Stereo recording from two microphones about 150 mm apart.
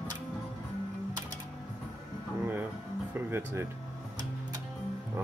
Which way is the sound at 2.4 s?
10° right (ahead or behind).